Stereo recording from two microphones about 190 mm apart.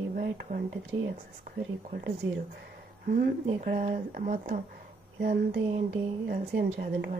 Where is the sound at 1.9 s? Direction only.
50° right (ahead or behind).